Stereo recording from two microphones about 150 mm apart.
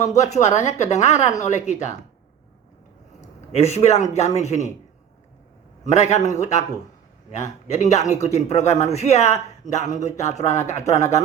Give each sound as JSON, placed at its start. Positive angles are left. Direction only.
{"t": 0.2, "sound": "a man's voice", "side_deg": 50}
{"t": 3.2, "sound": "a man's voice", "side_deg": 45}
{"t": 5.8, "sound": "a man's voice", "side_deg": 50}